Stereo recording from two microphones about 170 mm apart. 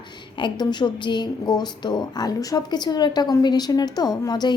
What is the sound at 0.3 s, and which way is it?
A woman's voice, 25° left (ahead or behind).